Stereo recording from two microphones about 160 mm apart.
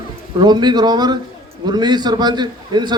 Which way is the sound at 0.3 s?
25° right (ahead or behind).